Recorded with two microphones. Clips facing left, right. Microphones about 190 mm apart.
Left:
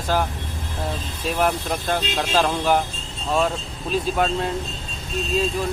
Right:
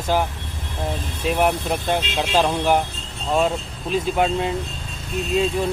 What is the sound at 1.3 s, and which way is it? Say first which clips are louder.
Speech: right 1 dB; 15° right (ahead or behind).